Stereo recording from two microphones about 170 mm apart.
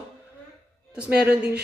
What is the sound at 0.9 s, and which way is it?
Speech, 10° right (ahead or behind).